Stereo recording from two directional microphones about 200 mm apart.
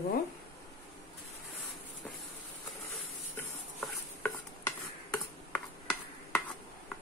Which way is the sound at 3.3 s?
10° left (ahead or behind).